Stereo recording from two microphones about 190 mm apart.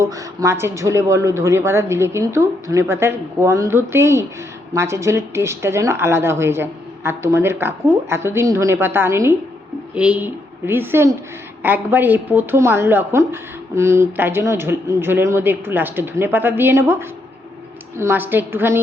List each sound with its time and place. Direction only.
0.0 s a woman's voice: 15° right (ahead or behind)